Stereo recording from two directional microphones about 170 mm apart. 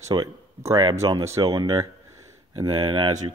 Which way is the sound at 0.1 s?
20° right (ahead or behind).